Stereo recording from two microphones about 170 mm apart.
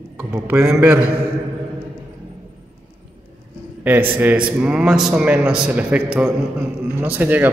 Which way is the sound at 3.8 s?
10° right (ahead or behind).